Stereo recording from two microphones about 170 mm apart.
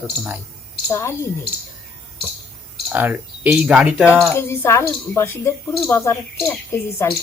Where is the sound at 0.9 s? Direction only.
15° left (ahead or behind).